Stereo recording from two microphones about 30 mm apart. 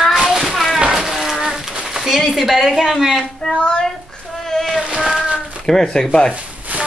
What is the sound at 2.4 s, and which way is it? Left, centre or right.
Speech, centre.